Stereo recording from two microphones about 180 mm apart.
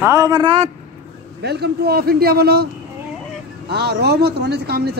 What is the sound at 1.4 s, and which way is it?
A man's voice, 65° right (ahead or behind).